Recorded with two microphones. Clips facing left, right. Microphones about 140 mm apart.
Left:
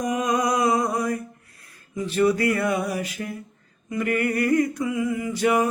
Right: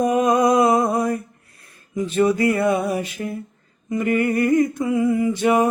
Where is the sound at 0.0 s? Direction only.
25° right (ahead or behind).